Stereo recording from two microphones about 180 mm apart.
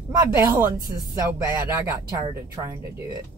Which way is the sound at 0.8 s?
20° right (ahead or behind).